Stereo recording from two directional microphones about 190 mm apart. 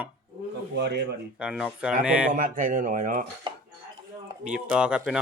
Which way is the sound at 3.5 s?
25° right (ahead or behind).